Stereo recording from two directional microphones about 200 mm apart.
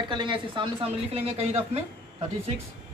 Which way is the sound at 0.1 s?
25° right (ahead or behind).